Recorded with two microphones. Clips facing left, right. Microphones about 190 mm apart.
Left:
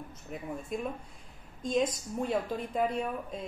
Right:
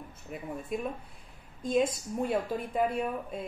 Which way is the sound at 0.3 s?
5° right (ahead or behind).